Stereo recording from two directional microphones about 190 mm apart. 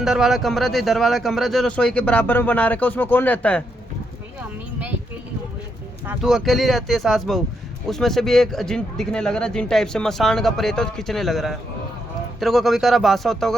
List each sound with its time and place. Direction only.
0.0 s speech: centre (ahead or behind)
6.2 s speech: centre (ahead or behind)